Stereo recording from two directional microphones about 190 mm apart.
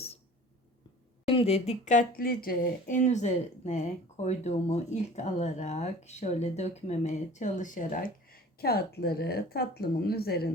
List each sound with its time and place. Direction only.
1.3 s speech: 30° left (ahead or behind); by 10.5 s 55° left (ahead or behind)